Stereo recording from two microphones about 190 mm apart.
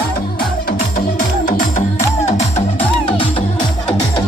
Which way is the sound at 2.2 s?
35° left (ahead or behind).